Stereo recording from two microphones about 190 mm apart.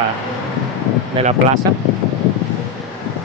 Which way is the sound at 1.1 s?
35° right (ahead or behind).